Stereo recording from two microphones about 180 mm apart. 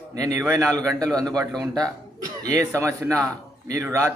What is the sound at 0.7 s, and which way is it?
A man's voice, 20° right (ahead or behind).